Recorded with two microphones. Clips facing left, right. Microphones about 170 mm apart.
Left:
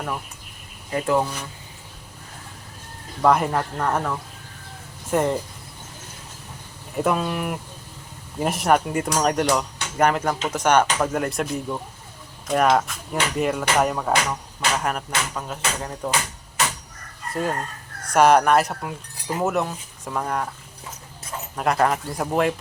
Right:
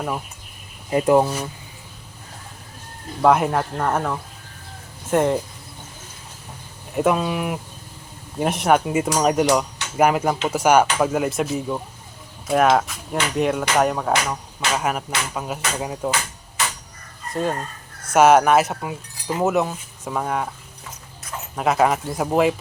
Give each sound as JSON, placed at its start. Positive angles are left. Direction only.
{"t": 0.9, "sound": "speech", "side_deg": -20}
{"t": 3.2, "sound": "speech", "side_deg": -5}
{"t": 6.9, "sound": "speech", "side_deg": 0}
{"t": 18.1, "sound": "speech", "side_deg": -5}
{"t": 21.5, "sound": "speech", "side_deg": -5}